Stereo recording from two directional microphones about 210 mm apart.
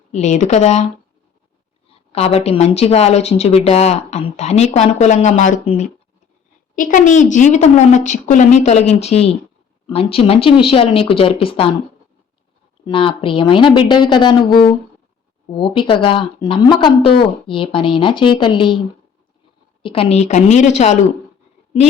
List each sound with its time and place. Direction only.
0.1 s speech: 35° left (ahead or behind)
2.1 s speech: 30° left (ahead or behind)
12.8 s speech: 25° left (ahead or behind)
19.8 s speech: 25° left (ahead or behind)